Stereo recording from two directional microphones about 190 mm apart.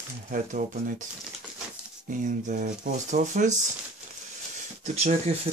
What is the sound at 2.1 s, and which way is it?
Speech, 40° right (ahead or behind).